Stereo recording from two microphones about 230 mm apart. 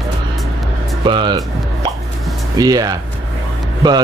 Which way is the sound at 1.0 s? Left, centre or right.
Right.